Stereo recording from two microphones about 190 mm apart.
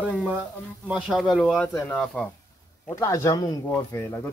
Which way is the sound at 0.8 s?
5° right (ahead or behind).